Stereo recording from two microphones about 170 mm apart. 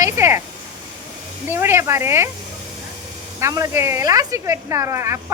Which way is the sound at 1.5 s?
15° right (ahead or behind).